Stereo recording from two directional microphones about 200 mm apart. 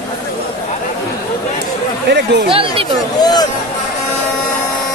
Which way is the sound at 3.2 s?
20° left (ahead or behind).